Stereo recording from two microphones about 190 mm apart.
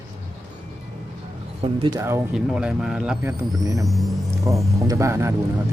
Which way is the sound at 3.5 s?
20° right (ahead or behind).